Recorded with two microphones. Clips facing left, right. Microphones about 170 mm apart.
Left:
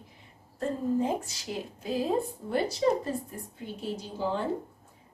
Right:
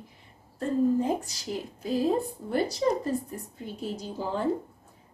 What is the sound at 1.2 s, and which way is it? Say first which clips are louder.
Speech: right 2 dB; 40° right (ahead or behind).